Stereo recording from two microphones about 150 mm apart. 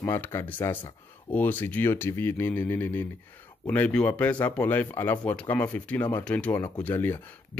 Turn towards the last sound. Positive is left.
turn(degrees=15)  # may be behind; listen again after turning